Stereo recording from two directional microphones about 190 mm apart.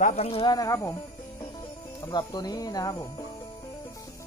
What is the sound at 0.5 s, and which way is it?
Speech, 15° left (ahead or behind).